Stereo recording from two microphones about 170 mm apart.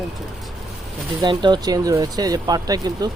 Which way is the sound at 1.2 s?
25° right (ahead or behind).